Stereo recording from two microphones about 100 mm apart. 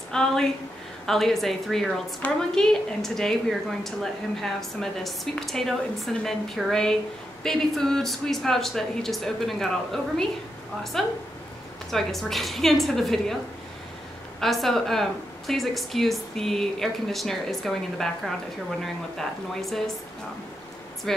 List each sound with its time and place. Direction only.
0.1 s a woman's voice: 5° left (ahead or behind)
14.4 s a woman's voice: centre (ahead or behind)